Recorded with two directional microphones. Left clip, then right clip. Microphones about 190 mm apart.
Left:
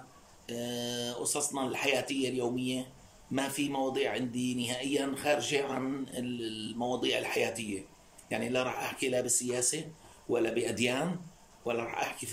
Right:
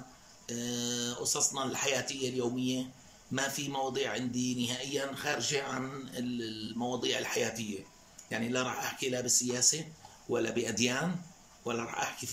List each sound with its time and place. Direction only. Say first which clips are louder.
0.5 s a man's voice: even; 10° left (ahead or behind)